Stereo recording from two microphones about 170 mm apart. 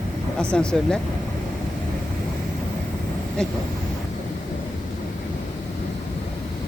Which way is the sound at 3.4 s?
5° left (ahead or behind).